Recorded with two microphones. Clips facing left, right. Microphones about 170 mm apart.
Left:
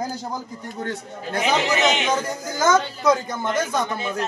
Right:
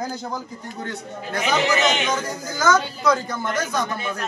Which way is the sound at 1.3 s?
25° left (ahead or behind).